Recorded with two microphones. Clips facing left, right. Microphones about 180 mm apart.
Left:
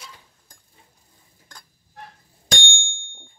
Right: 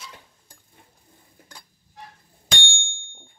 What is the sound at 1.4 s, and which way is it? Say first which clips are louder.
Dishes: right 3 dB; 60° right (ahead or behind).